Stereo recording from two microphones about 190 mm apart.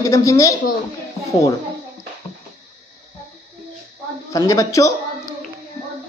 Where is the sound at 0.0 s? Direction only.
15° left (ahead or behind).